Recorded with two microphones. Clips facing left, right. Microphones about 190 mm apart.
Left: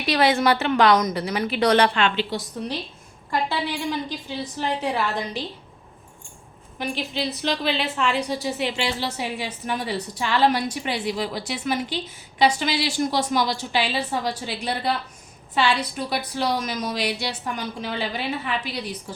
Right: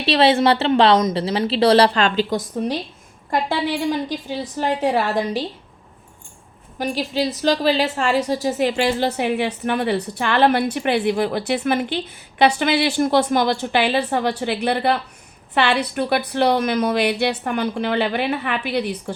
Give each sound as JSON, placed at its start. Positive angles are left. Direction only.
{"t": 0.0, "sound": "a woman's voice", "side_deg": -30}
{"t": 6.7, "sound": "a woman's voice", "side_deg": -40}